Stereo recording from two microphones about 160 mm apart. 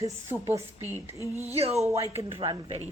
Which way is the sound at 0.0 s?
20° right (ahead or behind).